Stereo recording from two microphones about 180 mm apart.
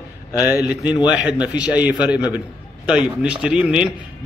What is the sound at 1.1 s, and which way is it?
A man's voice, 5° right (ahead or behind).